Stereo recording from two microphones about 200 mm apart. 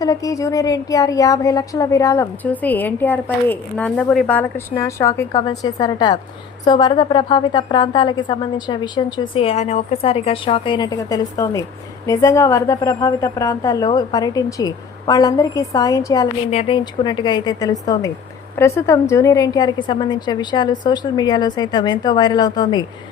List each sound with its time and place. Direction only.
0.0 s a woman's voice: 15° left (ahead or behind)
16.5 s a woman's voice: 30° left (ahead or behind)